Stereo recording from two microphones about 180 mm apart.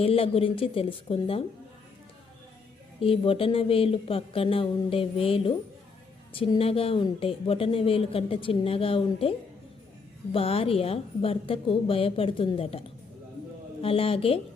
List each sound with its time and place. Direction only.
0.0 s speech: 30° left (ahead or behind)
3.0 s speech: 30° left (ahead or behind)
10.3 s speech: 30° left (ahead or behind)
13.8 s speech: 30° left (ahead or behind)